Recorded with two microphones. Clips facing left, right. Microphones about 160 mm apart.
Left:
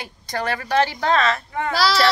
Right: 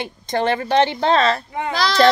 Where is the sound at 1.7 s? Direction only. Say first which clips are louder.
Right 1 dB; 5° left (ahead or behind).